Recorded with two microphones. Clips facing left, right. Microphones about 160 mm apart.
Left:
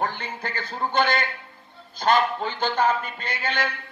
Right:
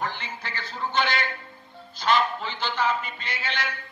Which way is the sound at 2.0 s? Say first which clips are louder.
Left 3 dB; 50° left (ahead or behind).